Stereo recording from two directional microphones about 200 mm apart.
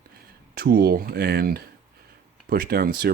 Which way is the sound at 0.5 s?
50° right (ahead or behind).